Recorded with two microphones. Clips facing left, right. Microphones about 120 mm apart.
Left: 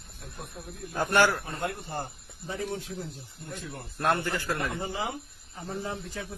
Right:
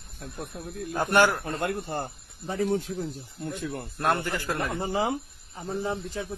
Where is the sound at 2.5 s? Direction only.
40° right (ahead or behind).